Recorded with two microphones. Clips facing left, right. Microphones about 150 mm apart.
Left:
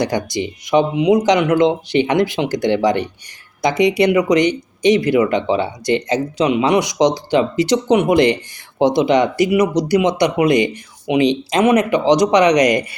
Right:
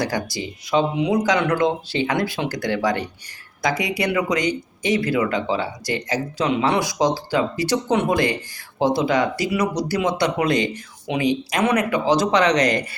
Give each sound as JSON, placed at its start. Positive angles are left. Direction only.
{"t": 0.0, "sound": "speech", "side_deg": 20}